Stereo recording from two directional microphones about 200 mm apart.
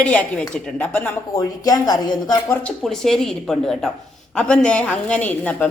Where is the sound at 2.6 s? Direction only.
Centre (ahead or behind).